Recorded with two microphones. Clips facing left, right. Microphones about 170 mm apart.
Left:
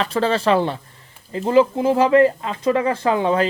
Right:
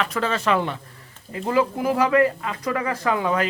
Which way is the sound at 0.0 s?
30° left (ahead or behind).